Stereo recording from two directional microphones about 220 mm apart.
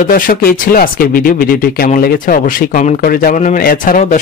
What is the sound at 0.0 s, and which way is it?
Speech, 40° left (ahead or behind).